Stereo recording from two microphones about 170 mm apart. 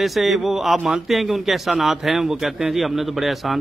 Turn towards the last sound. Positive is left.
turn(degrees=0)  # may be behind; listen again after turning